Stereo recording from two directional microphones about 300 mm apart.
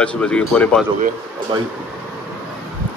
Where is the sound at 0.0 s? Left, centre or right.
Centre.